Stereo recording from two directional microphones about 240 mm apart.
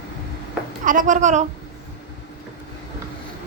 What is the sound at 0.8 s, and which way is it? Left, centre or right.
Speech, right.